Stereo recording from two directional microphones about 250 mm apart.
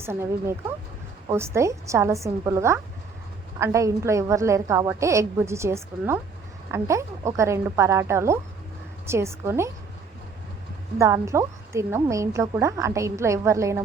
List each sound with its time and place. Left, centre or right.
0.0 s a woman's voice: centre
10.9 s a woman's voice: centre